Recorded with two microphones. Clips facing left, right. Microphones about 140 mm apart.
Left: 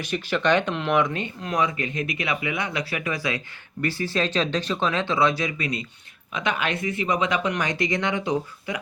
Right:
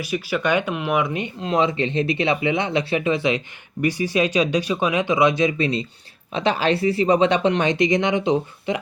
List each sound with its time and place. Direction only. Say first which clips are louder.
0.0 s speech: right 1 dB; 10° right (ahead or behind); by 8.8 s 25° right (ahead or behind)